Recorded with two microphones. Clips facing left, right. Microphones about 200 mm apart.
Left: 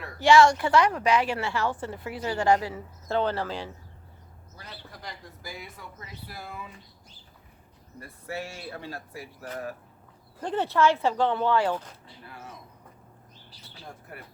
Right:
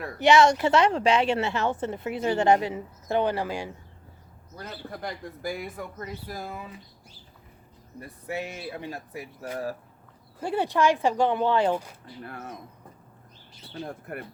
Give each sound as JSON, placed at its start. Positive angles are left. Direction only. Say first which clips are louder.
{"t": 0.2, "sound": "a woman's voice", "louder": "even", "side_deg": -20}
{"t": 4.5, "sound": "speech", "louder": "right 8 dB", "side_deg": -45}
{"t": 7.9, "sound": "speech", "louder": "right 3 dB", "side_deg": -20}
{"t": 10.4, "sound": "speech", "louder": "even", "side_deg": -10}
{"t": 12.2, "sound": "speech", "louder": "right 6 dB", "side_deg": -55}
{"t": 13.7, "sound": "speech", "louder": "right 9 dB", "side_deg": -55}